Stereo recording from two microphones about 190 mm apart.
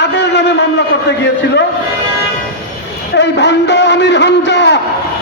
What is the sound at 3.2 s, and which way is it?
A man's voice, 65° left (ahead or behind).